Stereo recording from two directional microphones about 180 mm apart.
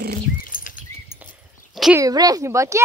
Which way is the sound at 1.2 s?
5° right (ahead or behind).